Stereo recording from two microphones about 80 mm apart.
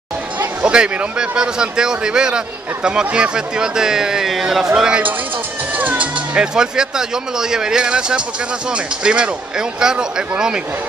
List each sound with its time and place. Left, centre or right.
0.4 s speech: centre